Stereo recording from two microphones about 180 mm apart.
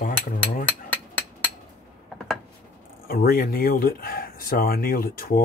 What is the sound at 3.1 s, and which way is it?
Speech, 55° left (ahead or behind).